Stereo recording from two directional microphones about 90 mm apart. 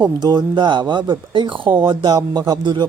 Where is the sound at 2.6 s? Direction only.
55° right (ahead or behind).